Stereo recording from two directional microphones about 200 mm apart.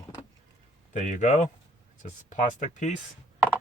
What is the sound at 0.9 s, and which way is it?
Speech, 35° left (ahead or behind).